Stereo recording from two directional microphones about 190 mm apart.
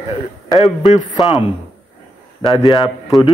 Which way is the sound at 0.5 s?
25° left (ahead or behind).